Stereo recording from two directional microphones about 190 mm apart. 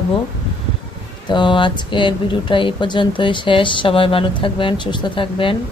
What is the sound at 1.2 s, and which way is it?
A woman's voice, 25° left (ahead or behind).